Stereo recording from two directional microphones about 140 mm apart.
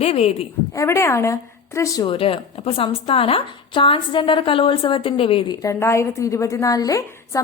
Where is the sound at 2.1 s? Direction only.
40° left (ahead or behind).